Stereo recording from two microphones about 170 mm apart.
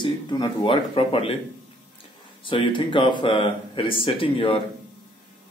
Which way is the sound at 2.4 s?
30° left (ahead or behind).